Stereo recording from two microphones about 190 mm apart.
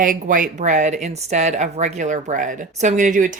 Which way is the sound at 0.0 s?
45° right (ahead or behind).